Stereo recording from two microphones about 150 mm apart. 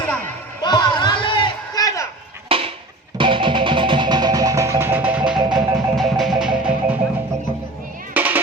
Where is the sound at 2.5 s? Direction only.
40° right (ahead or behind).